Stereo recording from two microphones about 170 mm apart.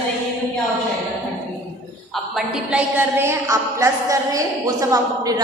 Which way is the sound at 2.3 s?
5° right (ahead or behind).